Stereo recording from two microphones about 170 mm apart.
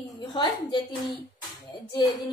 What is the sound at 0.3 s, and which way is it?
A woman's voice, 25° left (ahead or behind).